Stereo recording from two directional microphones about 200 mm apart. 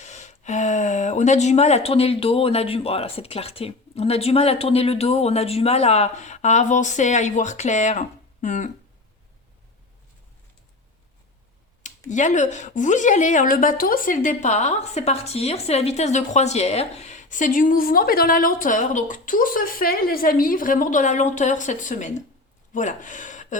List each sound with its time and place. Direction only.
0.0 s a woman's voice: 35° left (ahead or behind)
12.1 s a woman's voice: 35° left (ahead or behind)